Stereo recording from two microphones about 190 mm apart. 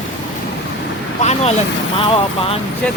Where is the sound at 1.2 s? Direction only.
35° left (ahead or behind).